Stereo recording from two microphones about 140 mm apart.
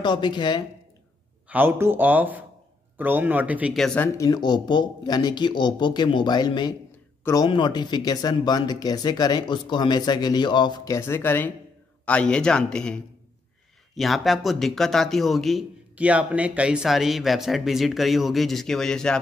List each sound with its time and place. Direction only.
0.0 s speech: 35° left (ahead or behind)
1.5 s speech: 15° right (ahead or behind)
3.7 s speech: 5° left (ahead or behind)
4.0 s speech: 25° left (ahead or behind)
11.0 s a man's voice: 15° left (ahead or behind); by 15.6 s centre (ahead or behind)
15.9 s speech: 10° right (ahead or behind)